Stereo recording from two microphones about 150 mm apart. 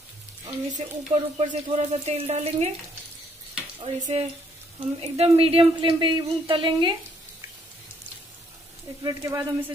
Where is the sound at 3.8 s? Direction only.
40° right (ahead or behind).